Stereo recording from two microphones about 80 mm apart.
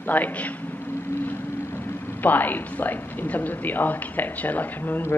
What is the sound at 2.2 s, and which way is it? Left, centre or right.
A woman's voice, left.